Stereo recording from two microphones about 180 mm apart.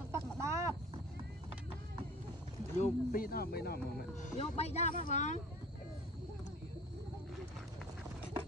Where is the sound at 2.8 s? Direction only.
50° left (ahead or behind).